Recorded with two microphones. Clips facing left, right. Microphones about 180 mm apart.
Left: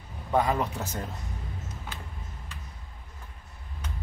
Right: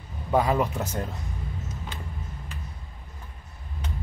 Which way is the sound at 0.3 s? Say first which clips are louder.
Right 3 dB; 10° right (ahead or behind).